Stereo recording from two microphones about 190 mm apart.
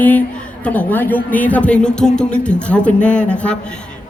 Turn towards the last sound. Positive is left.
turn(degrees=5)  # may be behind; listen again after turning